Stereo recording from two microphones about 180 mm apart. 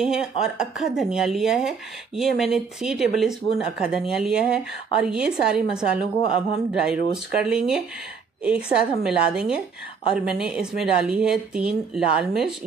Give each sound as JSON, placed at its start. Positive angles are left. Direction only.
{"t": 0.0, "sound": "speech", "side_deg": -5}